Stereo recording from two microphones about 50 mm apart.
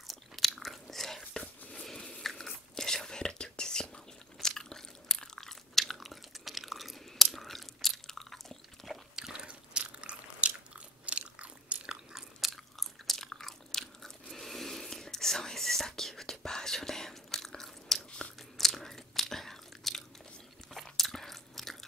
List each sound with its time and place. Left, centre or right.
0.1 s chewing: centre
2.0 s biting: centre
2.2 s whispering: centre
7.3 s biting: centre
8.8 s biting: centre
12.8 s chewing: centre
18.6 s biting: centre